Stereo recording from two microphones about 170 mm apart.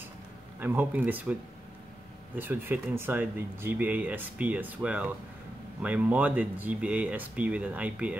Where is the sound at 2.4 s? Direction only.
10° right (ahead or behind).